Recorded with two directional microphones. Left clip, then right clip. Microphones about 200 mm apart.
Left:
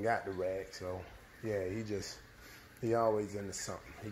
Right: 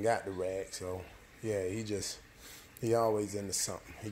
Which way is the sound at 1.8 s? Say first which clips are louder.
Right 2 dB; 45° right (ahead or behind).